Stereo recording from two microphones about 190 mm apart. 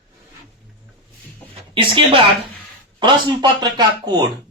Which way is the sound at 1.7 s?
25° right (ahead or behind).